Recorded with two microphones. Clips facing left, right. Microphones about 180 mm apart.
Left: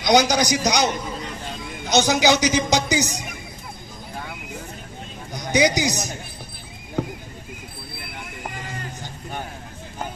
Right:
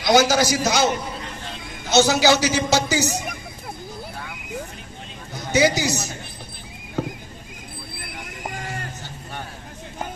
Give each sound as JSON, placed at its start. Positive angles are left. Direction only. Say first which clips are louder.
{"t": 0.0, "sound": "a man's voice", "louder": "right 1 dB", "side_deg": 20}
{"t": 1.9, "sound": "a man's voice", "louder": "right 1 dB", "side_deg": 15}
{"t": 5.3, "sound": "a sound", "louder": "right 1 dB", "side_deg": 15}
{"t": 5.8, "sound": "a man's voice", "louder": "left 1 dB", "side_deg": 15}